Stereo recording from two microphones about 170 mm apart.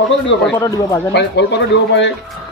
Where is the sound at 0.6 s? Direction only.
20° left (ahead or behind).